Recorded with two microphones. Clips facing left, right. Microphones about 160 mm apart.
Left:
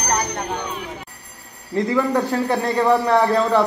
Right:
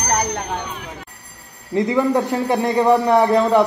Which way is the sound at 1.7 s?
20° right (ahead or behind).